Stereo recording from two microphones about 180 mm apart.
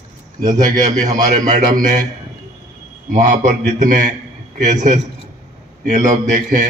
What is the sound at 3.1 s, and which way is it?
A man's voice, 40° right (ahead or behind).